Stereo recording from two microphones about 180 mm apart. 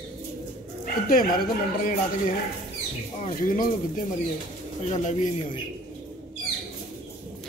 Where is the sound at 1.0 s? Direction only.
50° left (ahead or behind).